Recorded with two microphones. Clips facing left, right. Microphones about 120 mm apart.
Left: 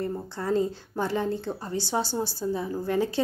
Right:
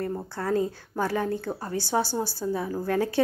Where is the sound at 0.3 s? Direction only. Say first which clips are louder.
Left 1 dB; 20° left (ahead or behind).